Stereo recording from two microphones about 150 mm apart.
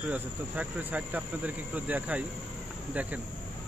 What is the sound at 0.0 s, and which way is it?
Speech, 10° right (ahead or behind).